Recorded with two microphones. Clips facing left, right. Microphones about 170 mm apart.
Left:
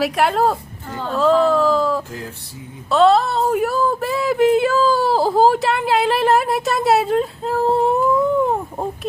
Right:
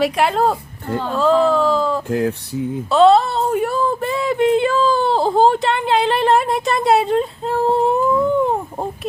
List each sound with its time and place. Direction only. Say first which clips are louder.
0.0 s a woman's voice: right 1 dB; centre (ahead or behind)
2.0 s speech: right 13 dB; 65° right (ahead or behind)
2.9 s a sound: right 2 dB; centre (ahead or behind)